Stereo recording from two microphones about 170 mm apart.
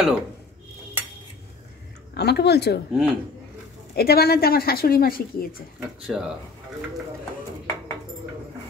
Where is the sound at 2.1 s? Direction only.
75° left (ahead or behind).